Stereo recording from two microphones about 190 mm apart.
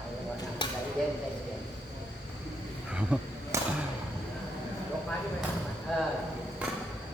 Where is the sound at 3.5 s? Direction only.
15° right (ahead or behind).